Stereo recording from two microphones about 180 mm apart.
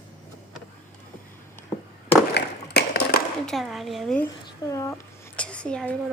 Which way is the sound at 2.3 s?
65° left (ahead or behind).